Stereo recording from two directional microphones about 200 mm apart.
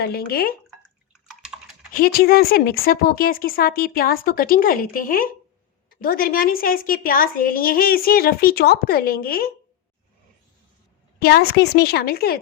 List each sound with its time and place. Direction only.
0.0 s a woman's voice: 50° left (ahead or behind)
1.9 s a woman's voice: 45° left (ahead or behind)
11.2 s a woman's voice: 50° left (ahead or behind)